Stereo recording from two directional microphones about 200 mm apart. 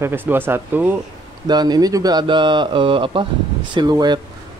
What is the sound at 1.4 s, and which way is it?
Speech, 20° right (ahead or behind).